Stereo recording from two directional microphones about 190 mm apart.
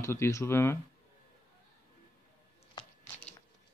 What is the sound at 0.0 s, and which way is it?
Speech, 15° left (ahead or behind).